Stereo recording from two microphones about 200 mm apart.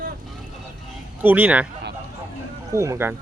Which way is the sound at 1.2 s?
5° right (ahead or behind).